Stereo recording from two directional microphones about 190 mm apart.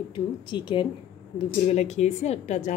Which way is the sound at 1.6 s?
35° left (ahead or behind).